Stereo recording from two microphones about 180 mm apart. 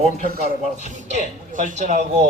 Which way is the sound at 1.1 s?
45° right (ahead or behind).